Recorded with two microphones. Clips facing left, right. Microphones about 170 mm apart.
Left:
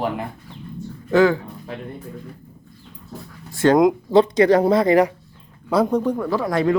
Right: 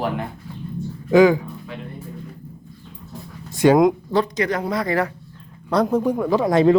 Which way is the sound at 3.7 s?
Centre (ahead or behind).